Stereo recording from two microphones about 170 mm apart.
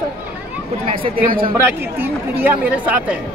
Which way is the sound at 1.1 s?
60° right (ahead or behind).